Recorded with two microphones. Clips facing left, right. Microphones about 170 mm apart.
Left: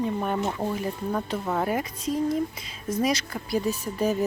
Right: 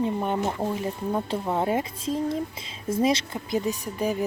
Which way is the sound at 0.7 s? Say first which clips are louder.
Right 1 dB; 20° right (ahead or behind).